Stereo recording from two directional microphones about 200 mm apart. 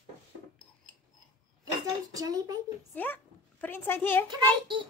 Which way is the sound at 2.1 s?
15° right (ahead or behind).